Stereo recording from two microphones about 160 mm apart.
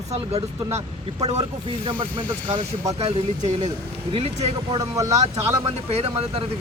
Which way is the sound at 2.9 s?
40° right (ahead or behind).